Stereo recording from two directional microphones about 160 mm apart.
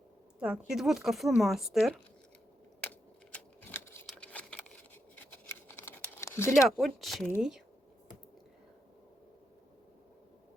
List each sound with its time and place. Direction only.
0.3 s speech: 5° right (ahead or behind)
3.3 s scissors: 10° left (ahead or behind)
4.0 s a sound: 10° left (ahead or behind)
5.2 s shuffling cards: 10° left (ahead or behind)
6.1 s a sound: 15° left (ahead or behind)
6.7 s speech: centre (ahead or behind)